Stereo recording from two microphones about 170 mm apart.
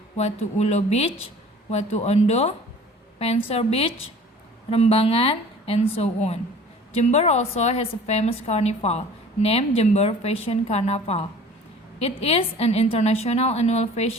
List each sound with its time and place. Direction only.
0.2 s a woman's voice: 40° left (ahead or behind)